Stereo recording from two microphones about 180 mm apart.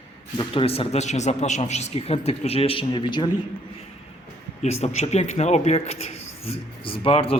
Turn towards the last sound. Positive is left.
turn(degrees=30)  # may be behind; listen again after turning